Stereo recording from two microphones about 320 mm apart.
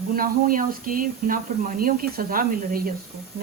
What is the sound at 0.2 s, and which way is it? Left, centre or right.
Speech, right.